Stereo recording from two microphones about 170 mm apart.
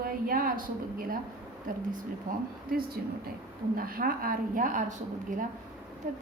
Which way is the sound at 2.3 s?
50° right (ahead or behind).